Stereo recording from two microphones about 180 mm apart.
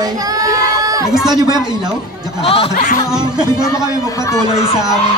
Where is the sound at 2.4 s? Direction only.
30° left (ahead or behind).